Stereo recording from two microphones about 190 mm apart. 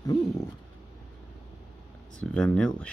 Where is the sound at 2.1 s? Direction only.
5° left (ahead or behind).